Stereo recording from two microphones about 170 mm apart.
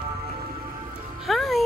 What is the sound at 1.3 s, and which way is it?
Music, centre (ahead or behind).